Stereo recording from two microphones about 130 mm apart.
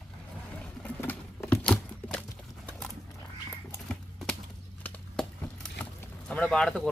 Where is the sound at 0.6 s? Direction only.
10° left (ahead or behind).